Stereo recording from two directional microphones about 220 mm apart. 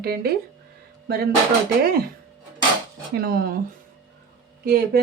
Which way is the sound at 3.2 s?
45° right (ahead or behind).